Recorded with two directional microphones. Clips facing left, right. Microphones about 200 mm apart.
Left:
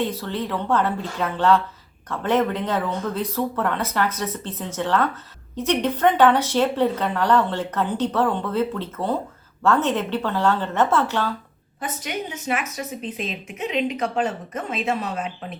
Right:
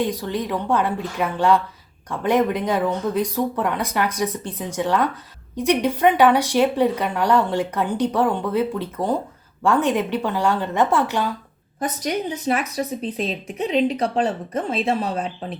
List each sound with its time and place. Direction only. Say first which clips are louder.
0.0 s speech: right 2 dB; 15° right (ahead or behind)
11.8 s a woman's voice: right 5 dB; 40° right (ahead or behind)